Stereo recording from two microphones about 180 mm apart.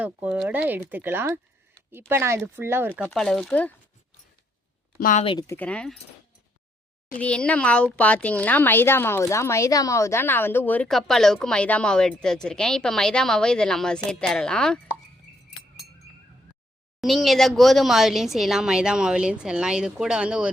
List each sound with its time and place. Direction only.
0.0 s speech: 5° right (ahead or behind)
3.1 s speech: centre (ahead or behind)
4.9 s speech: 50° left (ahead or behind)
5.2 s speech: 30° left (ahead or behind)
5.5 s speech: 10° left (ahead or behind)
7.2 s speech: 5° left (ahead or behind)
17.0 s speech: centre (ahead or behind)